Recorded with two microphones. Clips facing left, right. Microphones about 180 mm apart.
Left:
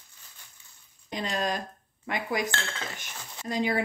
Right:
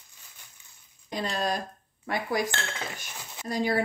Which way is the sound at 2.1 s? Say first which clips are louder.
Right 1 dB; 20° left (ahead or behind).